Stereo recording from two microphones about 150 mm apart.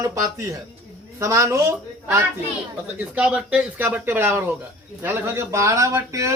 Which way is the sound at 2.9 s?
10° right (ahead or behind).